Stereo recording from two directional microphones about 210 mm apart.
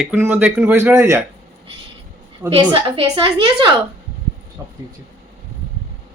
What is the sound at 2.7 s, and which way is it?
Speech, 25° right (ahead or behind).